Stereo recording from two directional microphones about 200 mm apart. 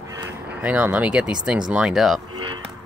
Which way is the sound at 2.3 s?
25° right (ahead or behind).